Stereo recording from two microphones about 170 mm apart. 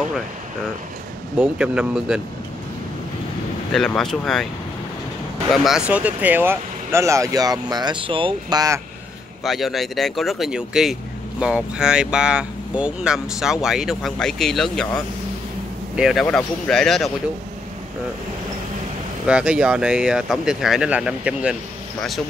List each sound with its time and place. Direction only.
1.4 s speech: 5° right (ahead or behind)
3.7 s speech: 5° left (ahead or behind)
5.5 s speech: centre (ahead or behind); by 8.8 s 20° right (ahead or behind)
9.4 s speech: centre (ahead or behind)
16.0 s speech: centre (ahead or behind)
19.2 s speech: 5° right (ahead or behind)